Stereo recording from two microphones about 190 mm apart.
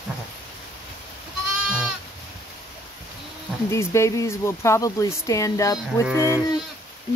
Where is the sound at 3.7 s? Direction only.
15° left (ahead or behind).